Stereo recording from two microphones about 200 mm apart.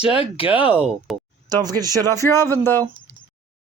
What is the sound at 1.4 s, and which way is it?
Speech, 20° right (ahead or behind).